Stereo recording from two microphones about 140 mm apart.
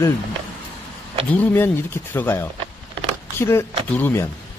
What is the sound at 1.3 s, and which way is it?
Speech, 15° left (ahead or behind).